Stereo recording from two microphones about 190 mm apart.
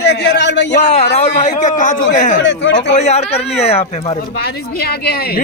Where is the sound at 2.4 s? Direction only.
70° left (ahead or behind).